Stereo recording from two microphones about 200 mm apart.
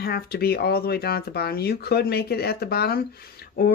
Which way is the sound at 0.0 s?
50° left (ahead or behind).